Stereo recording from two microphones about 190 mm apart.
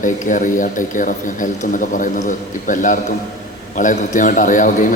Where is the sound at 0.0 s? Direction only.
45° left (ahead or behind).